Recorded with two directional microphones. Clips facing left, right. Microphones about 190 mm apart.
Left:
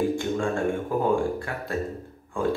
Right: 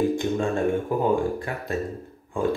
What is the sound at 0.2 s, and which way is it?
Speech, 20° right (ahead or behind).